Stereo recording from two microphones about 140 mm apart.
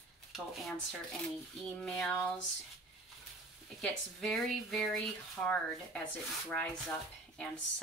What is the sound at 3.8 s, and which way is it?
Speech, centre (ahead or behind).